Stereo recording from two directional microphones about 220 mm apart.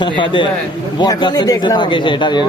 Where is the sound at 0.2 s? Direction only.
20° left (ahead or behind).